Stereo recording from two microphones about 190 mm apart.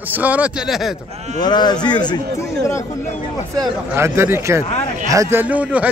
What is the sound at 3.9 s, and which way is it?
A man's voice, 15° right (ahead or behind).